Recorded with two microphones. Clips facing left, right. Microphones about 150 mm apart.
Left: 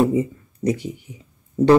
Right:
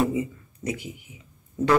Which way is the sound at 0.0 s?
35° left (ahead or behind).